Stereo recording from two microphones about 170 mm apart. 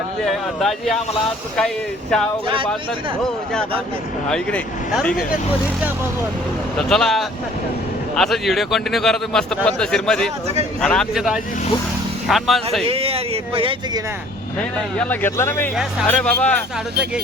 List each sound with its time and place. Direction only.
0.3 s a man's voice: centre (ahead or behind)
4.3 s a man's voice: 5° left (ahead or behind)
6.7 s a man's voice: 5° left (ahead or behind)
12.8 s speech: 35° right (ahead or behind)
14.9 s speech: 10° left (ahead or behind)
15.7 s a man's voice: 5° right (ahead or behind)
16.0 s speech: 10° left (ahead or behind)